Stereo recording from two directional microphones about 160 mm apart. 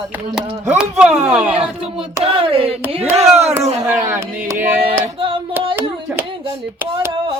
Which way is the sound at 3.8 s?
15° right (ahead or behind).